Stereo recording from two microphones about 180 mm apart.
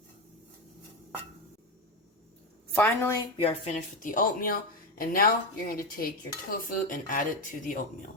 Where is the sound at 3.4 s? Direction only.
35° left (ahead or behind).